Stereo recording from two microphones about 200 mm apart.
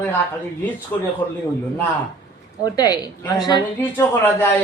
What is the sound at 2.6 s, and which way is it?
A woman's voice, 20° left (ahead or behind).